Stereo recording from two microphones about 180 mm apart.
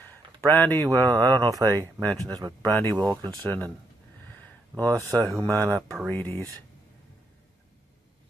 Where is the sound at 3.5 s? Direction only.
10° left (ahead or behind).